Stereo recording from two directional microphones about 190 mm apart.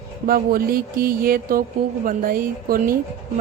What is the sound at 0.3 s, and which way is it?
A woman's voice, 50° right (ahead or behind).